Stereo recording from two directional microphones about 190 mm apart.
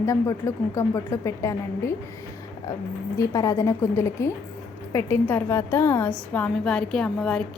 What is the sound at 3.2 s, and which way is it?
A woman's voice, 15° left (ahead or behind).